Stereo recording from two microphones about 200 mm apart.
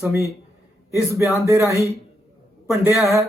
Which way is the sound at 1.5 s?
15° right (ahead or behind).